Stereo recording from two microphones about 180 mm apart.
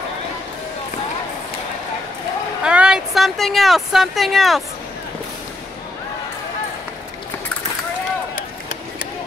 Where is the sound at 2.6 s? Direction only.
5° right (ahead or behind).